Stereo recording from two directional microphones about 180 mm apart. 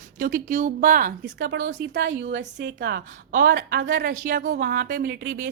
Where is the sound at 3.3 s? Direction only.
50° right (ahead or behind).